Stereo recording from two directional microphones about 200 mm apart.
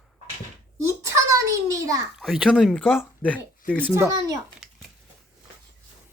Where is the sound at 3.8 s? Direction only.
15° right (ahead or behind).